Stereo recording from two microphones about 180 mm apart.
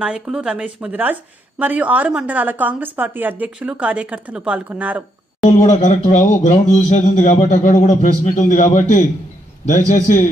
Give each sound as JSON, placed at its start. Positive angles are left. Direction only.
{"t": 0.0, "sound": "a woman's voice", "side_deg": -5}
{"t": 5.6, "sound": "a man's voice", "side_deg": 40}